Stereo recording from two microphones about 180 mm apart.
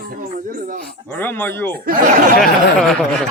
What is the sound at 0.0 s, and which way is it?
Speech, 50° right (ahead or behind).